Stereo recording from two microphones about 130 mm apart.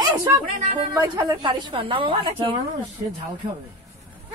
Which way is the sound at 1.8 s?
45° right (ahead or behind).